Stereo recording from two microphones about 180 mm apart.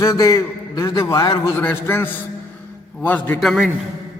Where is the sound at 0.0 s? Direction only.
20° left (ahead or behind).